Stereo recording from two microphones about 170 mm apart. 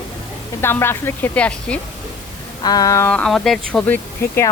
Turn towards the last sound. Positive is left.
turn(degrees=15)  # may be behind; listen again after turning